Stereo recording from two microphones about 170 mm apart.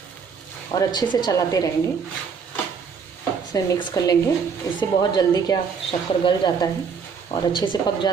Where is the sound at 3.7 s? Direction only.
20° left (ahead or behind).